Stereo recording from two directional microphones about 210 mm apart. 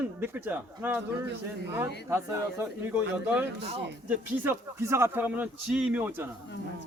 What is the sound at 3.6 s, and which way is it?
Speech, 30° right (ahead or behind).